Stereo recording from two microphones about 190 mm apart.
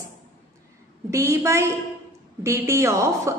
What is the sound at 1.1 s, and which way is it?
A woman's voice, 15° right (ahead or behind).